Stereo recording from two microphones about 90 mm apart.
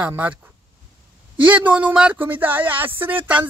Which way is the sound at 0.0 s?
15° right (ahead or behind).